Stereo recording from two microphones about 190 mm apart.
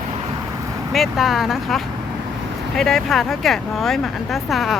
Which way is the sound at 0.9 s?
Centre (ahead or behind).